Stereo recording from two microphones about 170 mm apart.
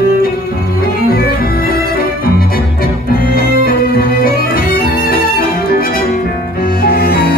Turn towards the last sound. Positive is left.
turn(degrees=60)  # may be behind; listen again after turning